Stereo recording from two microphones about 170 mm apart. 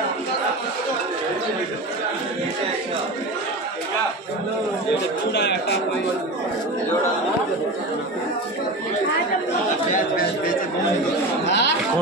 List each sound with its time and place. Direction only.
5.3 s speech: 90° left
11.4 s speech: 90° left